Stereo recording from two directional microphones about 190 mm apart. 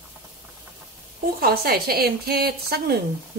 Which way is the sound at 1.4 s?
55° right (ahead or behind).